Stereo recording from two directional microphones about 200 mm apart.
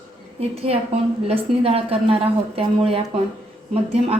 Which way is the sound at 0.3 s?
30° right (ahead or behind).